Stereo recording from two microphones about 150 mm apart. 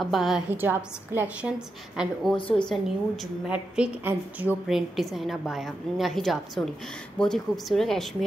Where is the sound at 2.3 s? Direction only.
35° left (ahead or behind).